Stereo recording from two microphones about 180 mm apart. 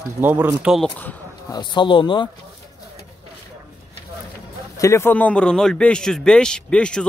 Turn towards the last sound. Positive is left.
turn(degrees=5)  # may be behind; listen again after turning